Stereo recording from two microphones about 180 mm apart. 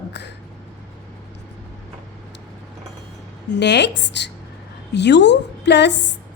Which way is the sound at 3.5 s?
75° left (ahead or behind).